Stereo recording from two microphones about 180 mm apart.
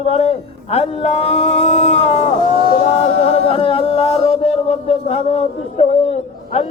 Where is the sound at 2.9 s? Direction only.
35° left (ahead or behind).